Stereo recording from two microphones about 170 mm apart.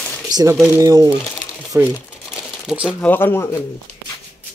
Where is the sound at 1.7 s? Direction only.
10° right (ahead or behind).